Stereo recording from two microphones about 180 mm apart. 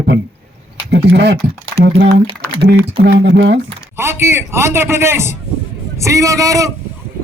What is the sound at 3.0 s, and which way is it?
Speech, 75° right (ahead or behind).